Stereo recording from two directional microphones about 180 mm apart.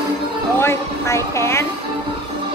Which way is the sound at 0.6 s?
15° left (ahead or behind).